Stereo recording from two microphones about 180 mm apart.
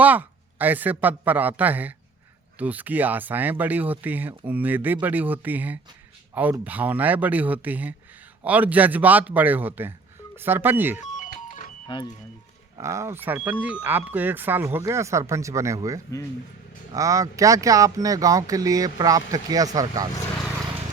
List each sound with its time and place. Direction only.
0.0 s speech: 10° right (ahead or behind)
11.0 s music: 45° left (ahead or behind)
11.9 s speech: 25° left (ahead or behind)
12.7 s speech: 15° right (ahead or behind)